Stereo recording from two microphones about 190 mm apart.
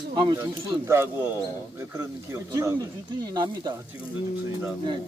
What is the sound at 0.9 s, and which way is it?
Speech, 15° right (ahead or behind).